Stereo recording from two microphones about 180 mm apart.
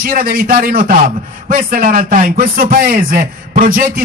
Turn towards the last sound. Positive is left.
turn(degrees=-50)  # may be behind; listen again after turning